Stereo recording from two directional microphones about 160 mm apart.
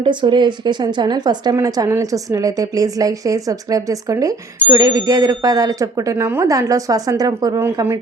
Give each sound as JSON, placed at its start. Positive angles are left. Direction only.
{"t": 0.0, "sound": "a woman's voice", "side_deg": -30}